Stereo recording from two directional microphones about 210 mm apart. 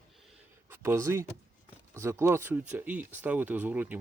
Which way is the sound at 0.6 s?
10° right (ahead or behind).